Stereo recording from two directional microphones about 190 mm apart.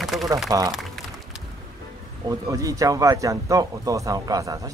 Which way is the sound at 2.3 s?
15° right (ahead or behind).